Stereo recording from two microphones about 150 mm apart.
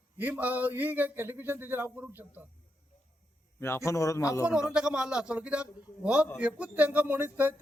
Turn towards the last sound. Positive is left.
turn(degrees=-10)  # may be behind; listen again after turning